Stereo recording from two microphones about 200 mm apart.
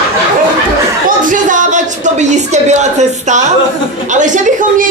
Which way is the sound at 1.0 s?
40° right (ahead or behind).